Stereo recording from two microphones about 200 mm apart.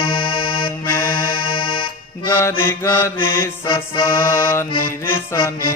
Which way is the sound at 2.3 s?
15° left (ahead or behind).